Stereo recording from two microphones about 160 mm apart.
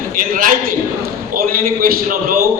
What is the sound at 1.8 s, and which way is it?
Speech, 60° right (ahead or behind).